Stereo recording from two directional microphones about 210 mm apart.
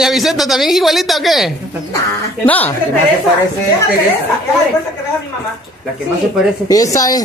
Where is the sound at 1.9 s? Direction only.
10° left (ahead or behind).